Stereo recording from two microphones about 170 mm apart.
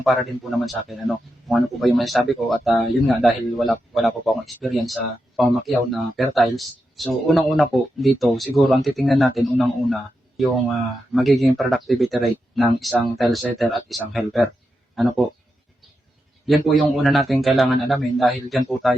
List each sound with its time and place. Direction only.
0.6 s speech: centre (ahead or behind)
16.5 s speech: centre (ahead or behind)